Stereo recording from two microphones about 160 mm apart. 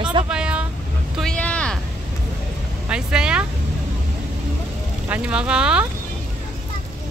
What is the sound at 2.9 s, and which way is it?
Speech, 5° right (ahead or behind).